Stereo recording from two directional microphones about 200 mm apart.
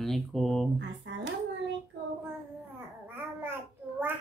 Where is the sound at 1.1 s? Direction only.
60° right (ahead or behind).